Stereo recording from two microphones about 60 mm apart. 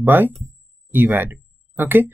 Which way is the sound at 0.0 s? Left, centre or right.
Right.